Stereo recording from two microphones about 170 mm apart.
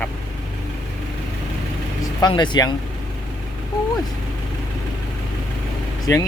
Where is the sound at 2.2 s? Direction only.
25° left (ahead or behind).